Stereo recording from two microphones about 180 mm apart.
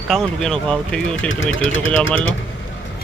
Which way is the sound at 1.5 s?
90° left.